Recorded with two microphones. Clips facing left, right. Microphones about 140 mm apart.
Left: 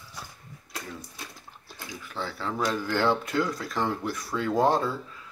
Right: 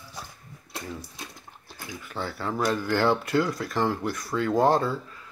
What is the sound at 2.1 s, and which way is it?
Speech, 10° right (ahead or behind).